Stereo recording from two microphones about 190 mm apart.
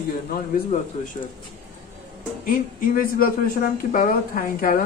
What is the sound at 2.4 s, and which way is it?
A woman's voice, 45° left (ahead or behind).